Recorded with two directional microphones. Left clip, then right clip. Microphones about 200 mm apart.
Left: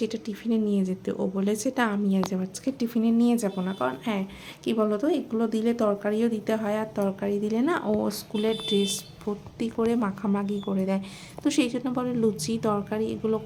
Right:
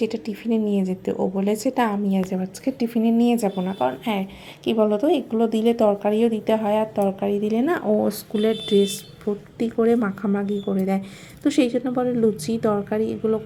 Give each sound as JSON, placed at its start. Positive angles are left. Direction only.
{"t": 0.0, "sound": "a woman's voice", "side_deg": 35}
{"t": 2.3, "sound": "speech", "side_deg": -5}